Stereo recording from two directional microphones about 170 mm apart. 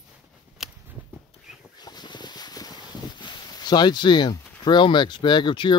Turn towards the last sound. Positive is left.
turn(degrees=30)  # may be behind; listen again after turning